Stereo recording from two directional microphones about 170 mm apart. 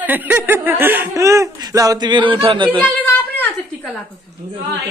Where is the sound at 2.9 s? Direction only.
10° left (ahead or behind).